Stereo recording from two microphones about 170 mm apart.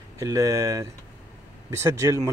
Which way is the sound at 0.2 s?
20° right (ahead or behind).